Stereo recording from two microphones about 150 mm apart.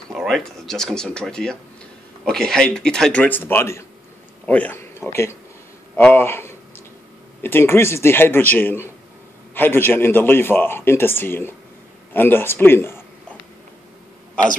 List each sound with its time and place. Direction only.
0.1 s a man's voice: centre (ahead or behind); by 13.0 s 15° left (ahead or behind)